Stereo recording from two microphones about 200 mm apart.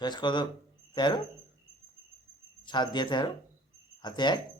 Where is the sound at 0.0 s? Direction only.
20° left (ahead or behind).